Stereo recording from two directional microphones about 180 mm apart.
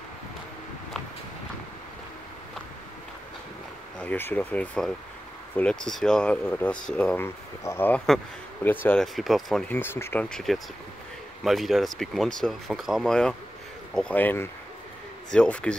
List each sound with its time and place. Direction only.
4.0 s speech: 10° left (ahead or behind)